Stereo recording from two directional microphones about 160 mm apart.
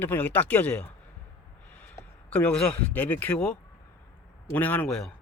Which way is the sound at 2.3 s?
10° left (ahead or behind).